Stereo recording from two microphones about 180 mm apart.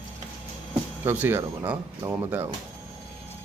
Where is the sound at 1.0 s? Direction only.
10° right (ahead or behind).